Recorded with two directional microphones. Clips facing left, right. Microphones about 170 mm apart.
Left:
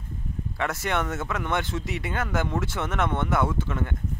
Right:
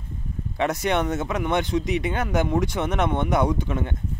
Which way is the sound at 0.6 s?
20° right (ahead or behind).